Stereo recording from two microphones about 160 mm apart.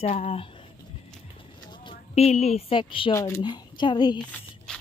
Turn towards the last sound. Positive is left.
turn(degrees=5)  # may be behind; listen again after turning